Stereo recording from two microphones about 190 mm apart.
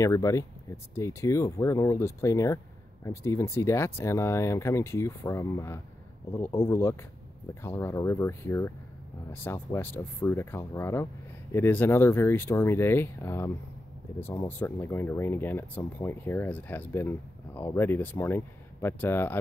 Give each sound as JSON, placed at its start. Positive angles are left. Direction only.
{"t": 0.0, "sound": "speech", "side_deg": 15}